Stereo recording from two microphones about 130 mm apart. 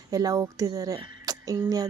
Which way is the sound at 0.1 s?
30° right (ahead or behind).